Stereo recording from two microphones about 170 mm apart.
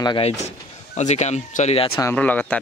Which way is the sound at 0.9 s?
40° left (ahead or behind).